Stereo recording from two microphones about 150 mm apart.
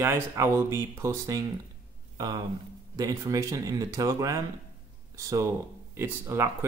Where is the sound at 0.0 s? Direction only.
15° right (ahead or behind).